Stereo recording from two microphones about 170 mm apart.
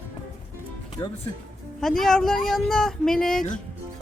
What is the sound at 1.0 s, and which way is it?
Speech, 25° left (ahead or behind).